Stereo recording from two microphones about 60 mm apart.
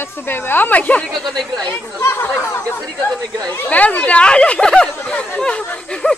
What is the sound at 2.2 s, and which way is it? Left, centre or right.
Speech, left.